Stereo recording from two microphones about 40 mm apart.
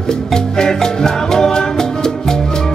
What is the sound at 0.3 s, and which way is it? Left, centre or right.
Music, centre.